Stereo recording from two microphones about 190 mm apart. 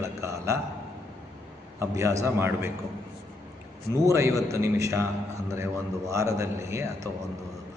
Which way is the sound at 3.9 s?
15° right (ahead or behind).